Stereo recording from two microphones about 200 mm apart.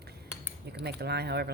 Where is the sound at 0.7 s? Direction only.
55° right (ahead or behind).